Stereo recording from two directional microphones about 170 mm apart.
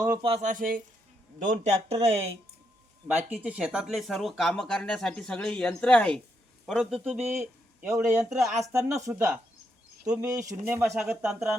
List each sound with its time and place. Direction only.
0.2 s speech: 35° right (ahead or behind)
0.4 s speech: 55° right (ahead or behind); by 2.3 s 35° right (ahead or behind)
3.1 s speech: 10° right (ahead or behind)
7.8 s a man's voice: 15° right (ahead or behind)
8.2 s speech: centre (ahead or behind)
9.0 s speech: 15° right (ahead or behind)
10.9 s speech: 5° right (ahead or behind)